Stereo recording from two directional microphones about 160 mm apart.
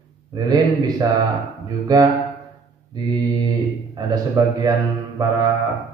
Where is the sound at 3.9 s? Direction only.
20° right (ahead or behind).